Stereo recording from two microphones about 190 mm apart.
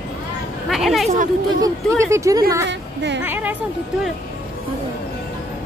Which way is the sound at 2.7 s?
65° right (ahead or behind).